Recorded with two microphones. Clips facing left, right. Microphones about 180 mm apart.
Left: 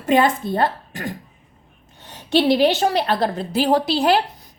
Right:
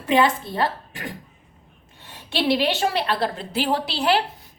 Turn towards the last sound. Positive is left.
turn(degrees=40)  # may be behind; listen again after turning